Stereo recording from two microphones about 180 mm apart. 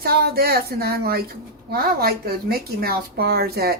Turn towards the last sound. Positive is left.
turn(degrees=-60)  # may be behind; listen again after turning